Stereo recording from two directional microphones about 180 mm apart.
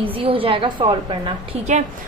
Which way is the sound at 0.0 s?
30° right (ahead or behind).